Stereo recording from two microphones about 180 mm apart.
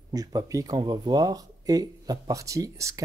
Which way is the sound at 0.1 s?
20° right (ahead or behind).